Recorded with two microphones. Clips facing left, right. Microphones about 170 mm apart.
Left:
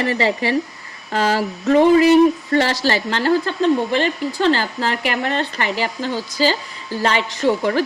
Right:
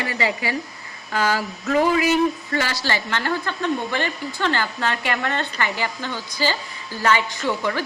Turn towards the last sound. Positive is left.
turn(degrees=40)  # may be behind; listen again after turning